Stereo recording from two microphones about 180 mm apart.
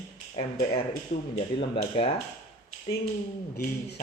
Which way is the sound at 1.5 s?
30° left (ahead or behind).